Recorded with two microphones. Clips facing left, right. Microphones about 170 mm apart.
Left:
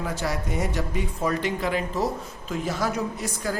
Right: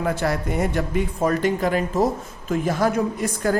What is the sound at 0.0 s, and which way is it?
Speech, 55° right (ahead or behind).